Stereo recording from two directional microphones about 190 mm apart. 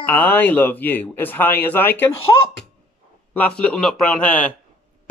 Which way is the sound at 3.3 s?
5° left (ahead or behind).